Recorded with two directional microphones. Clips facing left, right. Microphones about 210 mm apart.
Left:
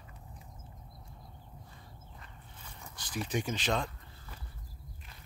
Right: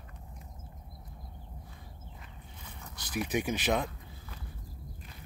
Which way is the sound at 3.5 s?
10° right (ahead or behind).